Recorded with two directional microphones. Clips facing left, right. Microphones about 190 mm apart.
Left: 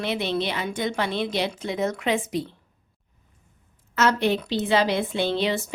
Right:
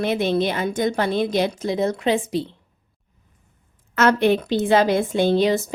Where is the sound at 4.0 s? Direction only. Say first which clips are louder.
Right 5 dB; 55° right (ahead or behind).